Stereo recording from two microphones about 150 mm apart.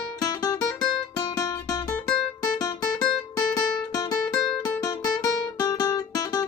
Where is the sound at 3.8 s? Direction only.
25° left (ahead or behind).